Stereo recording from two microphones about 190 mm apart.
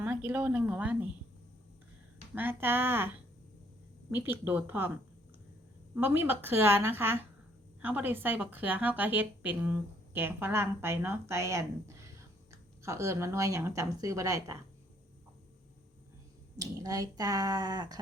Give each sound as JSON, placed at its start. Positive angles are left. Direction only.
{"t": 0.0, "sound": "a woman's voice", "side_deg": -10}
{"t": 2.3, "sound": "speech", "side_deg": -10}
{"t": 5.9, "sound": "a woman's voice", "side_deg": -10}
{"t": 16.6, "sound": "speech", "side_deg": -20}